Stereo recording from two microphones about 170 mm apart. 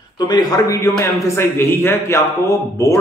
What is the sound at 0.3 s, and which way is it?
A man's voice, 20° left (ahead or behind).